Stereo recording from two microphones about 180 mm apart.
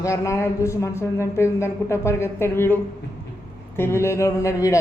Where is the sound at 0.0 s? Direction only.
15° left (ahead or behind).